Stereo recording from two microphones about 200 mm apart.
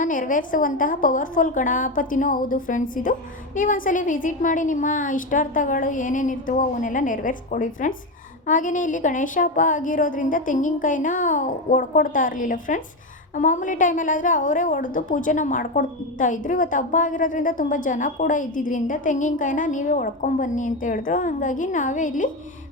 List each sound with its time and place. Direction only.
0.0 s a woman's voice: 40° left (ahead or behind)